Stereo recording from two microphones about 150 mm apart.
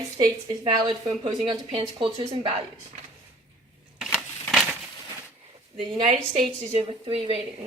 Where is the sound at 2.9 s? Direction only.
55° right (ahead or behind).